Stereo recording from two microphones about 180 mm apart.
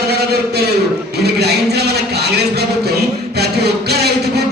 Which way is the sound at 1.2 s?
65° right (ahead or behind).